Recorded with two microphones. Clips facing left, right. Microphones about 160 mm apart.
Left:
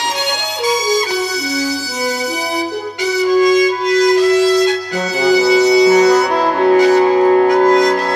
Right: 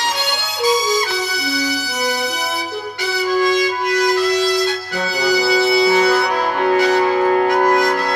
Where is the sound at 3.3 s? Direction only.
15° left (ahead or behind).